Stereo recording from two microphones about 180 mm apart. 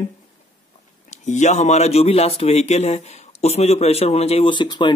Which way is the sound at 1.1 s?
40° left (ahead or behind).